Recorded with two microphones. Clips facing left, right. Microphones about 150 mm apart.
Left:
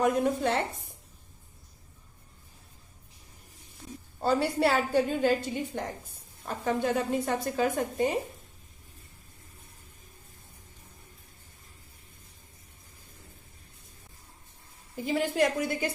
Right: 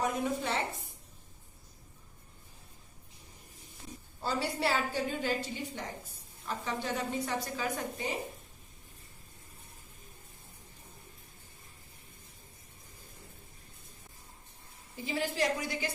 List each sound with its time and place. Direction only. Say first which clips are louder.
0.0 s a woman's voice: left 7 dB; 55° left (ahead or behind)
4.2 s a woman's voice: left 7 dB; 55° left (ahead or behind)
14.9 s a woman's voice: left 6 dB; 50° left (ahead or behind)